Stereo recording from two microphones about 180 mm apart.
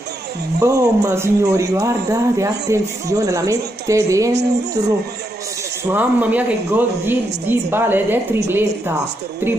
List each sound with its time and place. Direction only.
0.6 s speech: 15° right (ahead or behind)
5.9 s speech: 10° right (ahead or behind)